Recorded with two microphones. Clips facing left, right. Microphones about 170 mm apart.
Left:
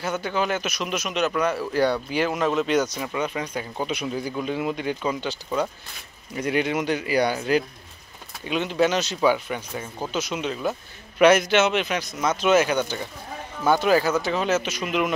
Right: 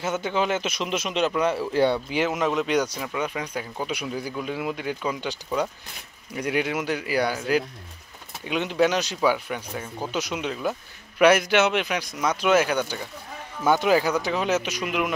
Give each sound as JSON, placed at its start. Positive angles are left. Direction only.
{"t": 0.0, "sound": "speech", "side_deg": -20}
{"t": 8.5, "sound": "speech", "side_deg": -15}